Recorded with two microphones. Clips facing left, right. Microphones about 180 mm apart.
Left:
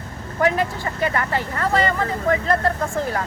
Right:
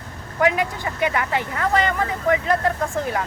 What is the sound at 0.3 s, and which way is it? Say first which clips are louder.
Speech: even; 10° right (ahead or behind).